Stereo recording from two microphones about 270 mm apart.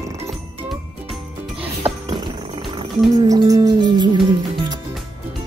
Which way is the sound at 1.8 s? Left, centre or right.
Right.